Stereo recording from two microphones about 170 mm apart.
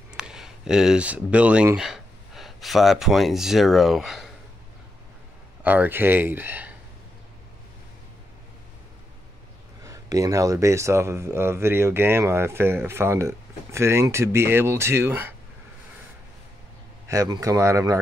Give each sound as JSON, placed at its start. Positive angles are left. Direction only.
{"t": 0.1, "sound": "speech", "side_deg": -5}
{"t": 5.6, "sound": "speech", "side_deg": -10}
{"t": 9.8, "sound": "speech", "side_deg": -20}
{"t": 17.1, "sound": "speech", "side_deg": -20}